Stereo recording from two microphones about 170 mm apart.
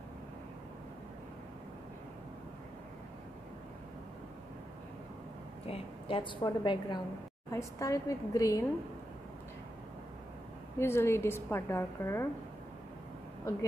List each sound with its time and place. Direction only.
5.7 s a woman's voice: 30° left (ahead or behind)
10.8 s a woman's voice: 15° left (ahead or behind)
13.5 s a woman's voice: 20° left (ahead or behind)